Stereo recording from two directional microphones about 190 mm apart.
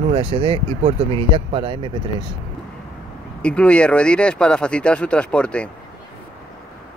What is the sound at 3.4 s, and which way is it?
Speech, 5° left (ahead or behind).